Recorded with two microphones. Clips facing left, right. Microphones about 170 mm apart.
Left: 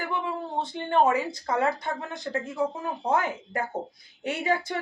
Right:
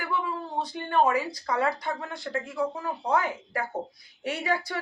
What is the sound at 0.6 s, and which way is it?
Speech, 25° left (ahead or behind).